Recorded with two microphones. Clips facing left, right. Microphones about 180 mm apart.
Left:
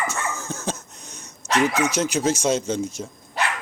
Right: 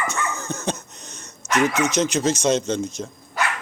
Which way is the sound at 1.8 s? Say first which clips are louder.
Right 1 dB; 10° left (ahead or behind).